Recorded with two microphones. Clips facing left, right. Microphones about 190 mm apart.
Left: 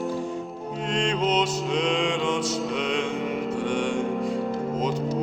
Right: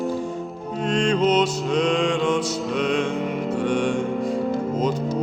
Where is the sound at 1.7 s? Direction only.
15° left (ahead or behind).